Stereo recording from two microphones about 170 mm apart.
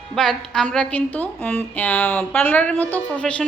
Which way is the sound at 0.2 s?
5° left (ahead or behind).